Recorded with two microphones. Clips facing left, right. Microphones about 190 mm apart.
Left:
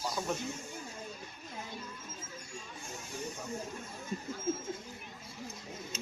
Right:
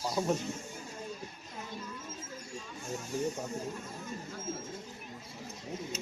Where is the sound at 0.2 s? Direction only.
30° right (ahead or behind).